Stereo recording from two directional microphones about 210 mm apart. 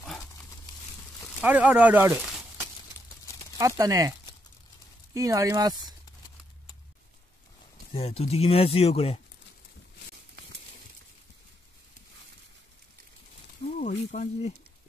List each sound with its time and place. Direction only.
1.4 s speech: 5° right (ahead or behind)
5.1 s speech: 15° right (ahead or behind)
7.9 s speech: 30° left (ahead or behind)
13.7 s a sound: 35° left (ahead or behind)